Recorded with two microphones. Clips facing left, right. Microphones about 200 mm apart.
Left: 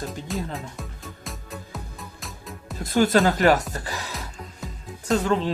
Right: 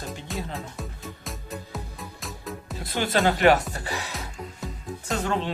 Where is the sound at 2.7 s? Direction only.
45° left (ahead or behind).